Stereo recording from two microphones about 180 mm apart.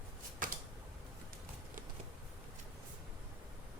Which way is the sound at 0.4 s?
50° right (ahead or behind).